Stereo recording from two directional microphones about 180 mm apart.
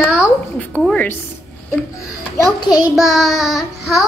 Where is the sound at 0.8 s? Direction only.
5° left (ahead or behind).